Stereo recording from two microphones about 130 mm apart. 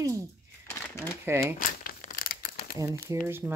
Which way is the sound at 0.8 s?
15° left (ahead or behind).